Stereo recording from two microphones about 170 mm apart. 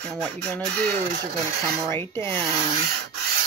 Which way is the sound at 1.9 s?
15° left (ahead or behind).